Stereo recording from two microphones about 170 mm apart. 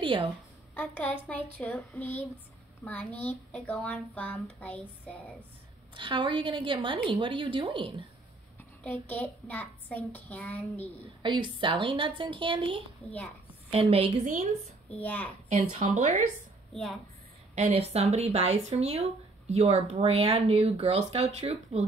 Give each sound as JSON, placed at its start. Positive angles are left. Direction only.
{"t": 0.0, "sound": "a woman's voice", "side_deg": -30}
{"t": 0.7, "sound": "speech", "side_deg": 10}
{"t": 5.9, "sound": "speech", "side_deg": -30}
{"t": 8.8, "sound": "speech", "side_deg": 10}
{"t": 11.2, "sound": "speech", "side_deg": -30}
{"t": 14.2, "sound": "speech", "side_deg": -50}
{"t": 14.9, "sound": "speech", "side_deg": 10}
{"t": 15.5, "sound": "speech", "side_deg": -45}
{"t": 17.6, "sound": "speech", "side_deg": -40}